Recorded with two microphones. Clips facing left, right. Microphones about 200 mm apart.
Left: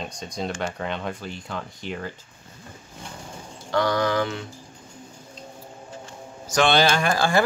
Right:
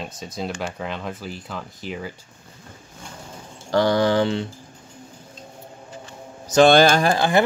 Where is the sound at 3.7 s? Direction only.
30° right (ahead or behind).